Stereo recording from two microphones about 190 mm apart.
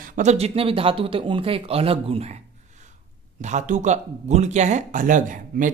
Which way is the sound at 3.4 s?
40° right (ahead or behind).